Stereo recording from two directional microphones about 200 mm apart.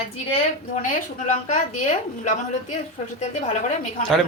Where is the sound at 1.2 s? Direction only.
35° left (ahead or behind).